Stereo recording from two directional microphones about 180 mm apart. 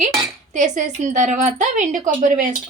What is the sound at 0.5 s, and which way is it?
Speech, 40° right (ahead or behind).